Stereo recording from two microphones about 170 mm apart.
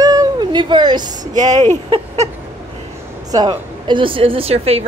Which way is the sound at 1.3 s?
45° right (ahead or behind).